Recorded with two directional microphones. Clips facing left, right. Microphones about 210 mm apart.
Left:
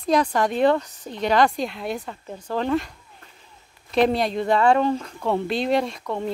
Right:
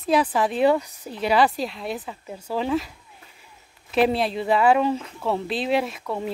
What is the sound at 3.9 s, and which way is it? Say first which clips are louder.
Speech: left 1 dB; 5° right (ahead or behind).